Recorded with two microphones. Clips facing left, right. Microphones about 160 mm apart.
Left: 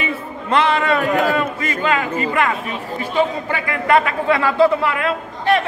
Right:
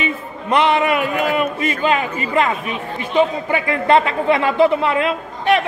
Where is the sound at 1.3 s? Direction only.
20° right (ahead or behind).